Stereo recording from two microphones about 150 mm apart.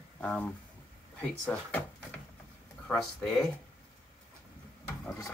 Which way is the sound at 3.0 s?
5° left (ahead or behind).